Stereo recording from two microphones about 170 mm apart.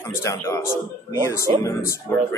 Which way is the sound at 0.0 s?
15° left (ahead or behind).